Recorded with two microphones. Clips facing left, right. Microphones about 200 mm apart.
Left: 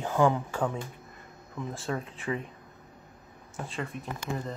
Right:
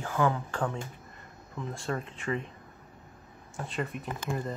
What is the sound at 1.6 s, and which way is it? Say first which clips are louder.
Speech: left 1 dB; 5° left (ahead or behind).